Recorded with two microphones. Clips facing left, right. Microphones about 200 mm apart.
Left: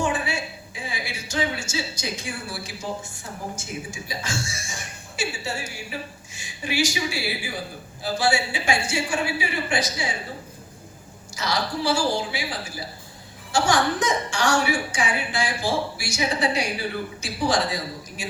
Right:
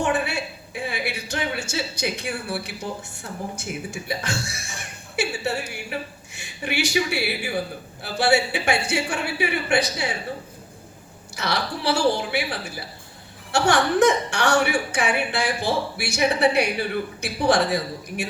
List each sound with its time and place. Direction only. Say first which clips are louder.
0.0 s a sound: right 2 dB; 60° right (ahead or behind)
3.2 s a woman's voice: right 4 dB; 60° right (ahead or behind)
11.3 s a woman's voice: left 1 dB; 60° right (ahead or behind)